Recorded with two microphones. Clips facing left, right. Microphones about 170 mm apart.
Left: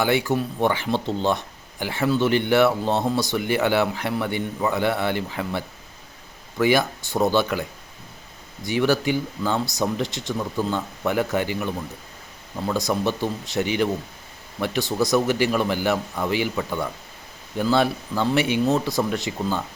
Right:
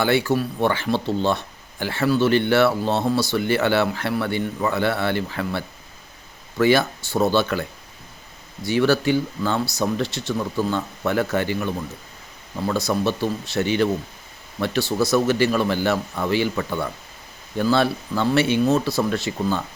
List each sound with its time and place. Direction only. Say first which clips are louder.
0.0 s speech: right 2 dB; 15° left (ahead or behind)